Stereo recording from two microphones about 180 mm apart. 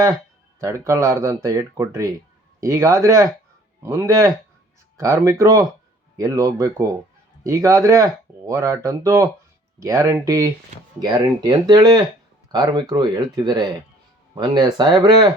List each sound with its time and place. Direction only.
0.6 s speech: 15° right (ahead or behind)